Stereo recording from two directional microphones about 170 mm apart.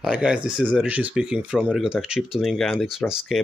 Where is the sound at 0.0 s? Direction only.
5° right (ahead or behind).